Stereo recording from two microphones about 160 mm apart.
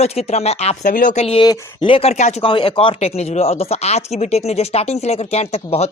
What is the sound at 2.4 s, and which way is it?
Speech, 30° left (ahead or behind).